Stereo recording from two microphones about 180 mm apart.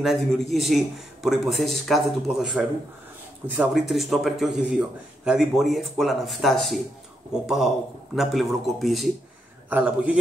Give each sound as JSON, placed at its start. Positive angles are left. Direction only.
{"t": 0.0, "sound": "a man's voice", "side_deg": 0}